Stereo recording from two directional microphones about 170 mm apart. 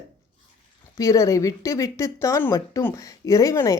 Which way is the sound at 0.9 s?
20° left (ahead or behind).